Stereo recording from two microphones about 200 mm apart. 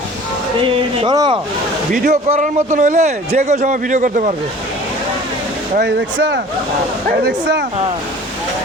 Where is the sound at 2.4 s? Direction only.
40° right (ahead or behind).